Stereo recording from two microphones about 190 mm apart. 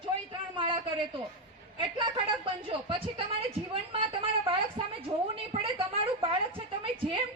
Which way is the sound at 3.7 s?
25° right (ahead or behind).